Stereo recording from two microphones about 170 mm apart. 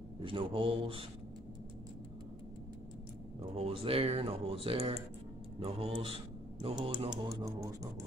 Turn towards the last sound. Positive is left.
turn(degrees=-20)  # may be behind; listen again after turning